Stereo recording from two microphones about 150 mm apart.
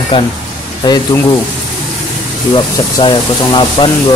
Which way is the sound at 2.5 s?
30° left (ahead or behind).